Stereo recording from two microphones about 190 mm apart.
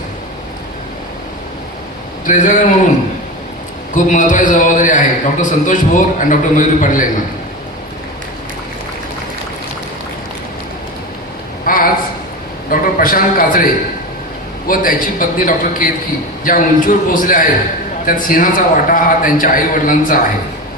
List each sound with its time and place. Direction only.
2.2 s a man's voice: 45° left (ahead or behind)
3.9 s a man's voice: 45° left (ahead or behind)
11.6 s a sound: 50° left (ahead or behind)
12.7 s a man's voice: 50° left (ahead or behind)
14.7 s a man's voice: 45° left (ahead or behind)